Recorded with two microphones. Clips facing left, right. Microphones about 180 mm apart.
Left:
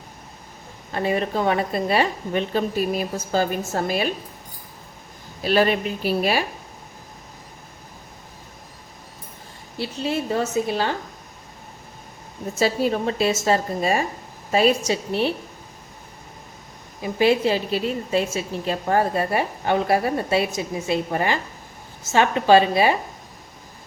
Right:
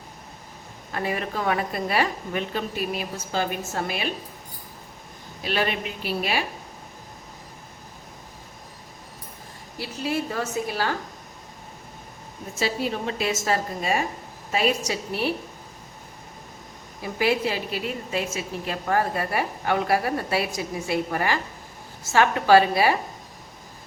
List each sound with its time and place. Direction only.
0.9 s a woman's voice: 30° left (ahead or behind)
5.4 s a woman's voice: 40° left (ahead or behind)
9.7 s a woman's voice: 25° left (ahead or behind)
12.5 s a woman's voice: 40° left (ahead or behind); by 15.3 s 25° left (ahead or behind)
17.0 s a woman's voice: 25° left (ahead or behind)